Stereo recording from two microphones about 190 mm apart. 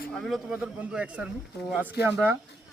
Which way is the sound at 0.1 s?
Centre (ahead or behind).